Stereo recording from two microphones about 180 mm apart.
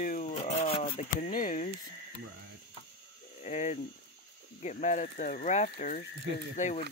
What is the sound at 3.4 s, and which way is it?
Speech, 40° left (ahead or behind).